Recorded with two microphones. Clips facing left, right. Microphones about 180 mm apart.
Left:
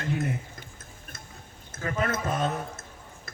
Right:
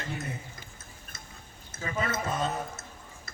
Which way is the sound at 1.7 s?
50° left (ahead or behind).